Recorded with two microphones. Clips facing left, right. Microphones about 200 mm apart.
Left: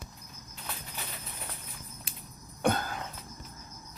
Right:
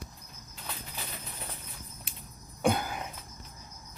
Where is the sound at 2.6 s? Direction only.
10° right (ahead or behind).